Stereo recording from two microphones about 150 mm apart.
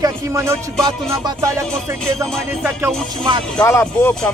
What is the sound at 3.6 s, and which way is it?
Speech, 20° left (ahead or behind).